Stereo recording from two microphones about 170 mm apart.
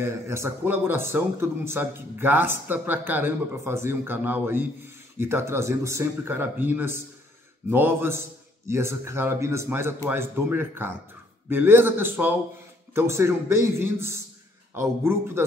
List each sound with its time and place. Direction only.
0.0 s speech: 15° right (ahead or behind)